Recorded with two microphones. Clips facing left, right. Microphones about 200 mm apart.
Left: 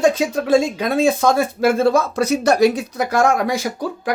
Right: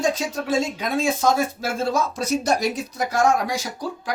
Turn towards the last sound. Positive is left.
turn(degrees=60)  # may be behind; listen again after turning